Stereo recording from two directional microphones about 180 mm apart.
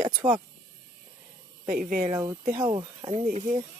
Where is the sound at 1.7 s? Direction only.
50° right (ahead or behind).